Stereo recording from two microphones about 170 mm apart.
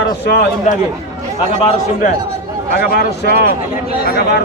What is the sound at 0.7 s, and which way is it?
Speech, 45° left (ahead or behind).